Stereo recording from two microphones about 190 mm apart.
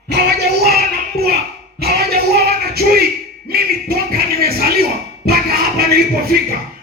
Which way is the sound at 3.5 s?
55° right (ahead or behind).